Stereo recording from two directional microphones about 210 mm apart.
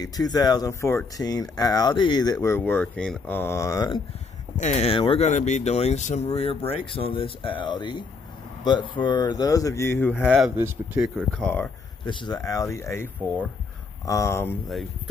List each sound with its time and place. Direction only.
0.0 s speech: 15° left (ahead or behind)
2.3 s speech: 10° left (ahead or behind)
4.6 s speech: 35° left (ahead or behind); by 10.2 s 10° left (ahead or behind)
10.2 s speech: 5° right (ahead or behind)
12.1 s speech: 20° left (ahead or behind); by 14.9 s 5° left (ahead or behind)